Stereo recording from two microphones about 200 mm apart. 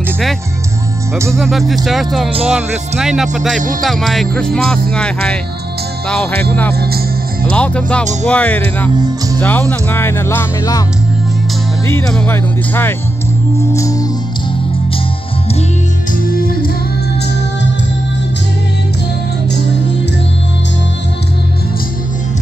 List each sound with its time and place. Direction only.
1.3 s speech: centre (ahead or behind)
6.7 s speech: 50° right (ahead or behind)
7.5 s speech: 5° left (ahead or behind)
8.0 s speech: 35° right (ahead or behind)
8.3 s speech: 10° left (ahead or behind)
8.9 s speech: 20° right (ahead or behind)
9.4 s speech: 10° left (ahead or behind)
11.9 s speech: 10° left (ahead or behind)
13.7 s music: 15° left (ahead or behind)
16.3 s music: 45° left (ahead or behind)